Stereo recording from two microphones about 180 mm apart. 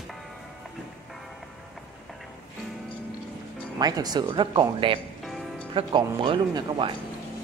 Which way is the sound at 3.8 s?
20° right (ahead or behind).